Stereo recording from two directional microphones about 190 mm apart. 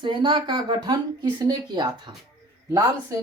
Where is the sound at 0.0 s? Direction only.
25° right (ahead or behind).